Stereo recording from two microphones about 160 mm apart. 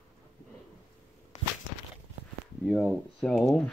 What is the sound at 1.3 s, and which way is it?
Walk, 45° left (ahead or behind).